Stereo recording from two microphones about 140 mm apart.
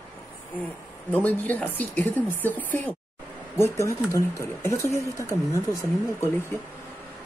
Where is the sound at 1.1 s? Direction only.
10° left (ahead or behind).